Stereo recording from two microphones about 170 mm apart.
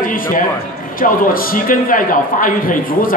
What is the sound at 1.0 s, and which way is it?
A man's voice, 55° left (ahead or behind).